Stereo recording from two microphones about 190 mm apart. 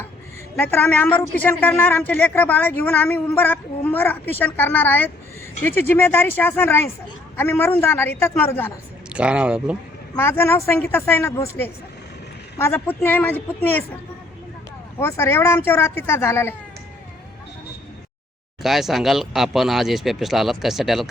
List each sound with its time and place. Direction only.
0.5 s a woman's voice: 10° left (ahead or behind)
9.0 s speech: 5° right (ahead or behind)
10.2 s a woman's voice: 15° left (ahead or behind)
14.9 s a woman's voice: 15° left (ahead or behind)
18.6 s speech: centre (ahead or behind)